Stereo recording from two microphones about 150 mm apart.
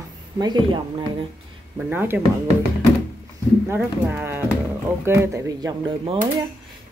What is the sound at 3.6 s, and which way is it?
Speech, 15° right (ahead or behind).